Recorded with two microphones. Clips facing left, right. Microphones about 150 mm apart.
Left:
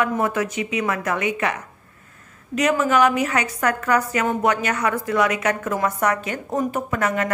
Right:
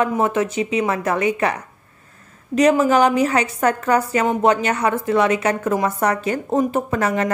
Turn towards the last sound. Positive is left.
turn(degrees=-30)  # may be behind; listen again after turning